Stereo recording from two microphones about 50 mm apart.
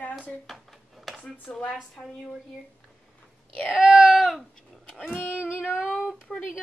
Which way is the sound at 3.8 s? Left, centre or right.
Centre.